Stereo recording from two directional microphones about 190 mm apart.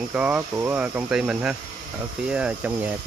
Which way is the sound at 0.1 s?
5° right (ahead or behind).